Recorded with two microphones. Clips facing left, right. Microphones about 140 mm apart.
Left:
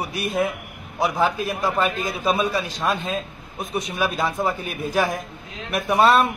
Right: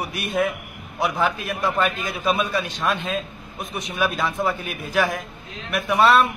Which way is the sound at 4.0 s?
15° left (ahead or behind).